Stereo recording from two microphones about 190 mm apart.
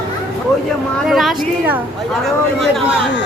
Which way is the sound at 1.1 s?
Centre (ahead or behind).